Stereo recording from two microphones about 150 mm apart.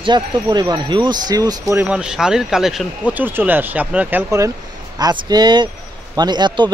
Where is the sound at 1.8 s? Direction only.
5° right (ahead or behind).